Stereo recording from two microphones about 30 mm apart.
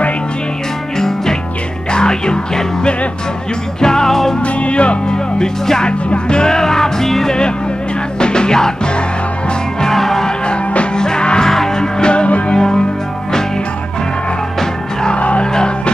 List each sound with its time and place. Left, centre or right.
0.9 s music: centre
1.9 s music: left; by 4.4 s centre
4.4 s speech: left
5.1 s speech: left
6.0 s music: left; by 7.2 s centre
7.2 s music: left
9.9 s music: centre
11.0 s music: left
11.4 s music: centre
15.1 s music: left